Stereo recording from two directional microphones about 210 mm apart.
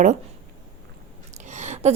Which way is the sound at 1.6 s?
30° right (ahead or behind).